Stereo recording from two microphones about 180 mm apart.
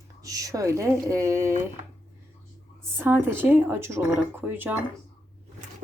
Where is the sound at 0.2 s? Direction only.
20° right (ahead or behind).